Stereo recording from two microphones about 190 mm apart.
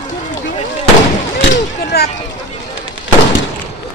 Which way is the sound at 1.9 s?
55° left (ahead or behind).